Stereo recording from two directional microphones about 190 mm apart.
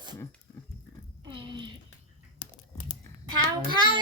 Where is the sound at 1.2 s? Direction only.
25° right (ahead or behind).